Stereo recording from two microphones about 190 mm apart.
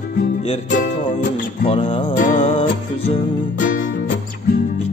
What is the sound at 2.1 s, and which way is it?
Music, 45° left (ahead or behind).